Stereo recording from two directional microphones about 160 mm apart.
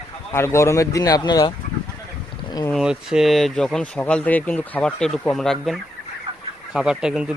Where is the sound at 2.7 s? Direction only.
5° right (ahead or behind).